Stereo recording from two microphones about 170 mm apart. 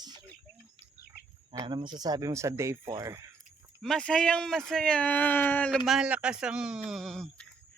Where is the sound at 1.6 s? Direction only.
25° right (ahead or behind).